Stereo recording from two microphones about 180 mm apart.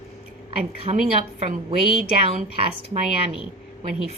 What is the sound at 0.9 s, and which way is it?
Speech, 35° right (ahead or behind).